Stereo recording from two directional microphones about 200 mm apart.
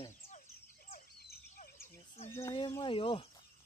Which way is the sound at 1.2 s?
50° left (ahead or behind).